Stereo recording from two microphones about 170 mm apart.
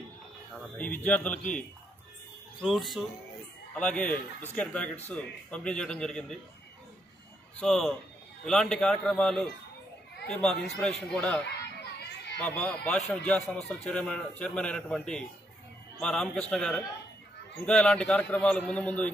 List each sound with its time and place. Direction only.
0.7 s a man's voice: 10° left (ahead or behind)
2.6 s a man's voice: centre (ahead or behind)
7.6 s a man's voice: centre (ahead or behind)
11.4 s children playing: 80° left
12.4 s a man's voice: 5° left (ahead or behind)